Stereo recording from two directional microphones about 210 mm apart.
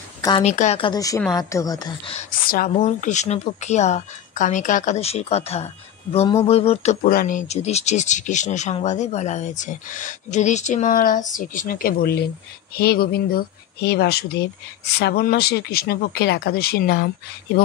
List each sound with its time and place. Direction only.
0.4 s speech: 35° left (ahead or behind)
2.4 s speech: 40° left (ahead or behind)